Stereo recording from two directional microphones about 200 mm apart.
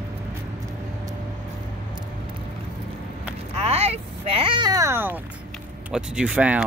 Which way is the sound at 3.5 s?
30° right (ahead or behind).